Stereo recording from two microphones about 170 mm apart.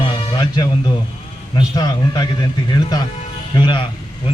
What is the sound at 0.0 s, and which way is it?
Music, 25° left (ahead or behind).